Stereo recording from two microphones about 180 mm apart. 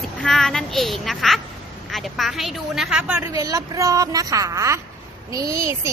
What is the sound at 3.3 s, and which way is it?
A woman's voice, 20° right (ahead or behind).